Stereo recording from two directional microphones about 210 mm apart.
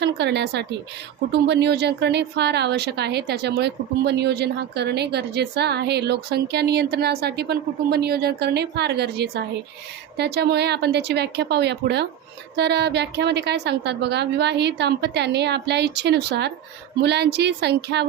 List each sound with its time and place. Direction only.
0.0 s a woman's voice: 55° right (ahead or behind)